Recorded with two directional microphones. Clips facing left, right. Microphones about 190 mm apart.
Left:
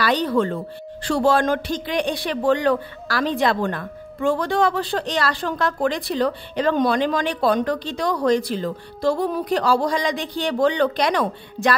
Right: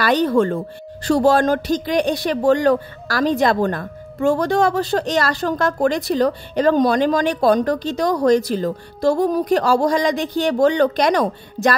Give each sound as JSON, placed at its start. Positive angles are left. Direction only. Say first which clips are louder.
{"t": 0.0, "sound": "speech", "louder": "right 4 dB", "side_deg": -45}